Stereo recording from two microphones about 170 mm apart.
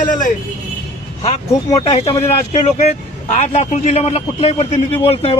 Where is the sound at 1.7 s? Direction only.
40° left (ahead or behind).